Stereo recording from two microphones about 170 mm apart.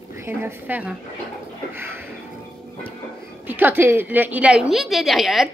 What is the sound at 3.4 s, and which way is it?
A woman's voice, 10° right (ahead or behind).